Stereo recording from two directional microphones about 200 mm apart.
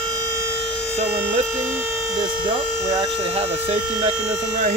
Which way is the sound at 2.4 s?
15° right (ahead or behind).